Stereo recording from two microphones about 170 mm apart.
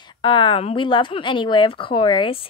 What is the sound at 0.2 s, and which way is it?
Speech, 30° left (ahead or behind).